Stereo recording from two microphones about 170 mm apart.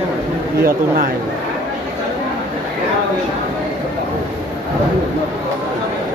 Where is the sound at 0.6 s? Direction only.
60° right (ahead or behind).